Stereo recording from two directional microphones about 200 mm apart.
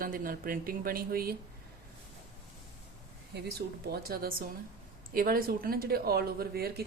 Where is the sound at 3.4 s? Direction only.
55° right (ahead or behind).